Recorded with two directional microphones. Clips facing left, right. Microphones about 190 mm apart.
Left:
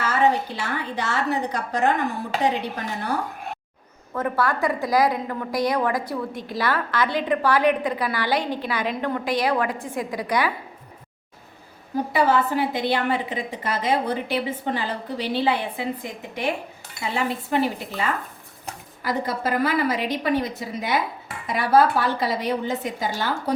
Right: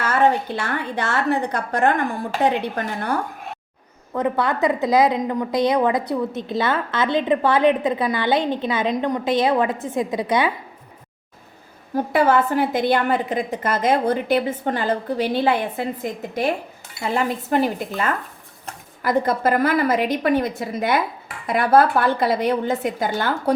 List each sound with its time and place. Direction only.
0.6 s speech: 55° right (ahead or behind)
4.1 s a woman's voice: 20° right (ahead or behind)
12.1 s a woman's voice: 50° right (ahead or behind)
17.0 s a woman's voice: 45° right (ahead or behind)